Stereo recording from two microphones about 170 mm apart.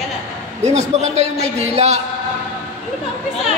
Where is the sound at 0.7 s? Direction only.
40° right (ahead or behind).